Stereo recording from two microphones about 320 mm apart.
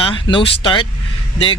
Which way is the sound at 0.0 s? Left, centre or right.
Centre.